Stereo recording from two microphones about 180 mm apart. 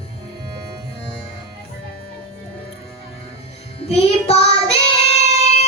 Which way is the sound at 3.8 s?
35° left (ahead or behind).